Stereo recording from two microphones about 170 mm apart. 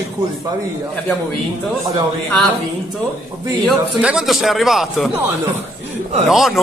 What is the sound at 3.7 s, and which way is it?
A man's voice, centre (ahead or behind).